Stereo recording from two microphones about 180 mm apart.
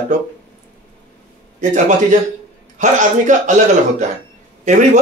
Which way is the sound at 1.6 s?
45° right (ahead or behind).